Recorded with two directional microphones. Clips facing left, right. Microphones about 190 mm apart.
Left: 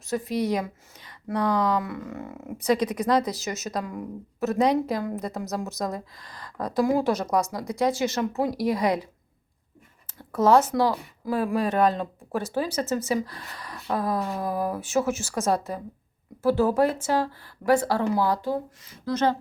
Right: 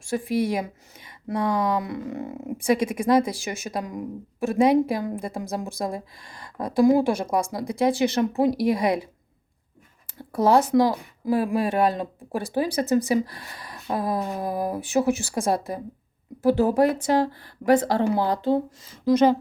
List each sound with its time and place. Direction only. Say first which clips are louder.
0.1 s speech: right 2 dB; 20° right (ahead or behind)
1.9 s a sound: right 4 dB; 30° right (ahead or behind)
3.2 s speech: even; 10° right (ahead or behind)
5.2 s a woman's voice: right 1 dB; 30° right (ahead or behind)
6.3 s a woman's voice: right 2 dB; 25° right (ahead or behind)
7.8 s speech: right 3 dB; 15° right (ahead or behind)
10.3 s a woman's voice: right 1 dB; 15° right (ahead or behind)